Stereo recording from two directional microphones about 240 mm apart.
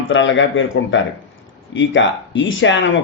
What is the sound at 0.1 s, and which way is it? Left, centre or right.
A man's voice, left.